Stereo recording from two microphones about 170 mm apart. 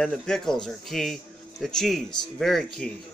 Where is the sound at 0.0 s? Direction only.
5° left (ahead or behind).